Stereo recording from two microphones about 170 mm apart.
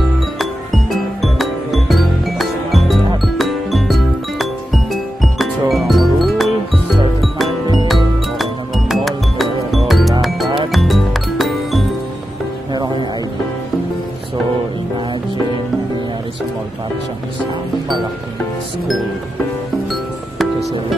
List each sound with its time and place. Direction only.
0.4 s music: centre (ahead or behind)
7.6 s music: 25° right (ahead or behind)
7.9 s music: centre (ahead or behind)